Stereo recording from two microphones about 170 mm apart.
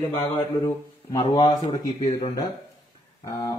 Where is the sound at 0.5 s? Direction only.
25° left (ahead or behind).